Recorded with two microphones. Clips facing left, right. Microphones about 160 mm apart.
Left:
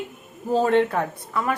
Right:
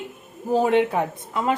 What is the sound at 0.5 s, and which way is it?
Speech, 15° right (ahead or behind).